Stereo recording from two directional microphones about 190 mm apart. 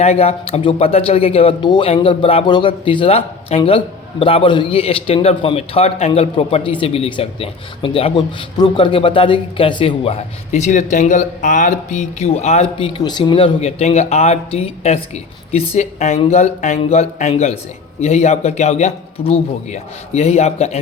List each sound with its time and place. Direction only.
0.0 s speech: 35° left (ahead or behind)